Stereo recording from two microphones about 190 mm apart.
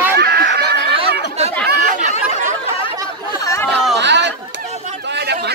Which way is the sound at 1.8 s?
40° right (ahead or behind).